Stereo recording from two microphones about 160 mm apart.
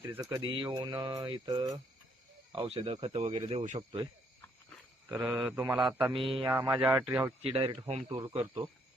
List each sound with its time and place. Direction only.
0.2 s mantra: 20° right (ahead or behind)
0.4 s mantra: 30° right (ahead or behind)
2.6 s speech: 40° right (ahead or behind)
5.0 s speech: 10° right (ahead or behind)
5.9 s mantra: 5° right (ahead or behind)
6.1 s speech: 35° right (ahead or behind)
6.5 s speech: 15° right (ahead or behind)
7.4 s speech: 35° right (ahead or behind)